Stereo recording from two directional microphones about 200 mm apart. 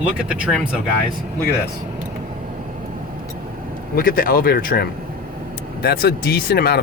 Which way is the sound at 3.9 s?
45° left (ahead or behind).